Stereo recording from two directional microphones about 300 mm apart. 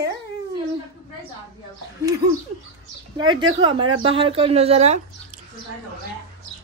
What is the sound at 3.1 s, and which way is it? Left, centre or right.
Speech, centre.